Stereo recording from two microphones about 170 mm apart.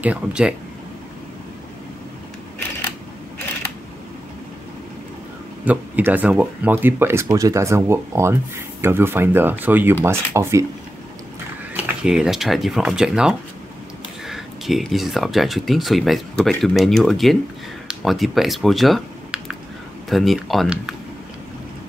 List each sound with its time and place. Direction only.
0.0 s speech: 5° right (ahead or behind)
5.7 s speech: 10° right (ahead or behind)
11.7 s speech: 5° right (ahead or behind)